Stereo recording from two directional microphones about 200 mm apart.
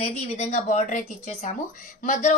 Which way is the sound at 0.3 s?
35° left (ahead or behind).